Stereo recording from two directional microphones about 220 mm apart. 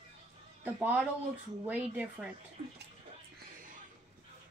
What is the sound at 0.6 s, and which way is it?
Speech, 5° right (ahead or behind).